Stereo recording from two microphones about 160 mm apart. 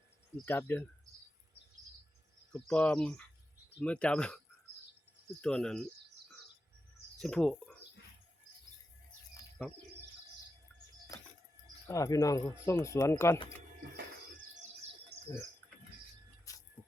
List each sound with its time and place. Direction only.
0.4 s speech: 15° left (ahead or behind)
2.5 s speech: 5° left (ahead or behind)
5.4 s speech: 5° left (ahead or behind)
7.2 s speech: 5° left (ahead or behind)
9.6 s speech: 5° left (ahead or behind)
11.9 s speech: 20° left (ahead or behind)
13.9 s bird: 55° right (ahead or behind)